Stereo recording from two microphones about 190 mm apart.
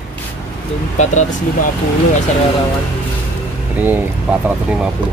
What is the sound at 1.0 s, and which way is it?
Speech, 40° left (ahead or behind).